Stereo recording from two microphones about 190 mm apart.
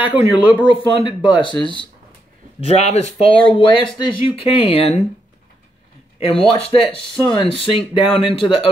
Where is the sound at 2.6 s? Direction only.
35° left (ahead or behind).